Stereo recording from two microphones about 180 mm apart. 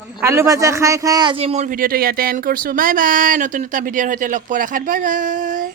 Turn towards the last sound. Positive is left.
turn(degrees=-50)  # may be behind; listen again after turning